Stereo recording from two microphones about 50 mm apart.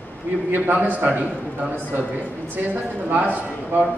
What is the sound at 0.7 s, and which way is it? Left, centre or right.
A man's voice, right.